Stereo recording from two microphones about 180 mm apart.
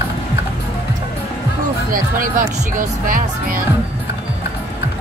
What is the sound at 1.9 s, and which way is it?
Speech, 50° right (ahead or behind).